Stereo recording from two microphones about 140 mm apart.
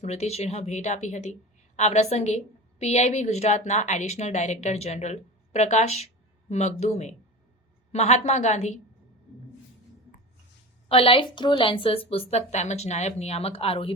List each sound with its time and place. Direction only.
0.0 s a woman's voice: 50° left (ahead or behind)
10.8 s a woman's voice: 40° left (ahead or behind)